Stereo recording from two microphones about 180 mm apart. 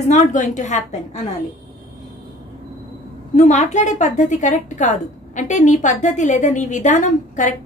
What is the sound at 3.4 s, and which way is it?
A woman's voice, 40° left (ahead or behind).